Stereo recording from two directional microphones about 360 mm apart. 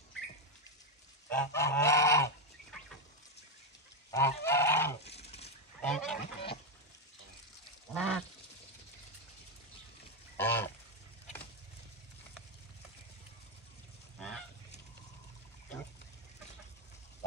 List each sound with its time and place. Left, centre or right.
1.3 s goose: centre
4.1 s goose: centre
5.0 s a sound: centre
5.8 s honk: centre
6.2 s duck: centre
7.9 s duck: centre
10.3 s a sound: centre